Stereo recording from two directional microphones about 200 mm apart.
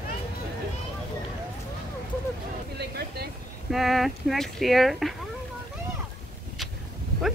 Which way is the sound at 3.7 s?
Centre (ahead or behind).